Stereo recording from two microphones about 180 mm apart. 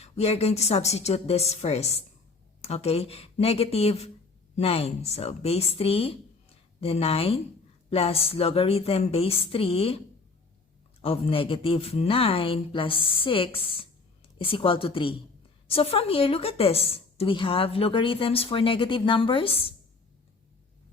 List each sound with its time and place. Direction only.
0.0 s a woman's voice: 35° left (ahead or behind)
11.0 s a woman's voice: 30° left (ahead or behind)